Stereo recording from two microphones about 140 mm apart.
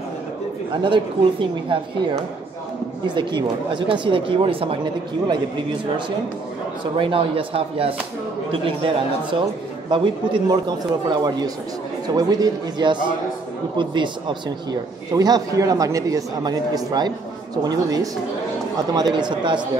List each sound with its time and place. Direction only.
0.8 s a man's voice: 35° right (ahead or behind)
3.2 s a man's voice: 35° right (ahead or behind)